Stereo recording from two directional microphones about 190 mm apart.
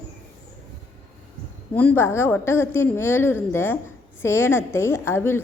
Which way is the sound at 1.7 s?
10° left (ahead or behind).